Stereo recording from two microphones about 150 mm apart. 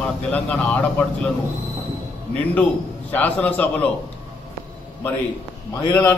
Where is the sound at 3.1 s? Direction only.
10° left (ahead or behind).